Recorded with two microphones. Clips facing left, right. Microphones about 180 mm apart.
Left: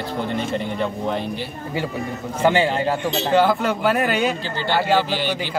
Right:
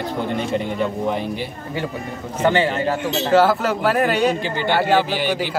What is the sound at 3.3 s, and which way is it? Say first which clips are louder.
Speech: right 2 dB; 5° right (ahead or behind).